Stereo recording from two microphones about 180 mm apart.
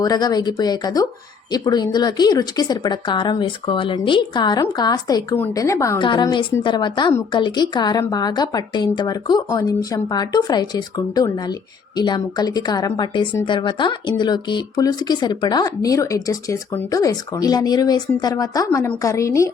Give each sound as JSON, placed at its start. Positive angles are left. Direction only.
{"t": 0.0, "sound": "a woman's voice", "side_deg": 20}